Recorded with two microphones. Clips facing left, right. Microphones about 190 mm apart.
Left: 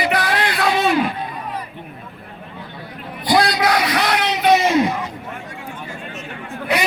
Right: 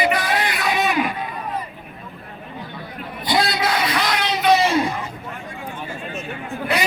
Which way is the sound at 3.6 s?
65° left (ahead or behind).